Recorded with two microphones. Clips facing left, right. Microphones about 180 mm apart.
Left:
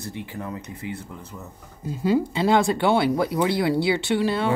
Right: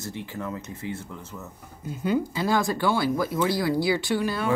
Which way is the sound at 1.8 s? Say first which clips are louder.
Left 4 dB; 35° left (ahead or behind).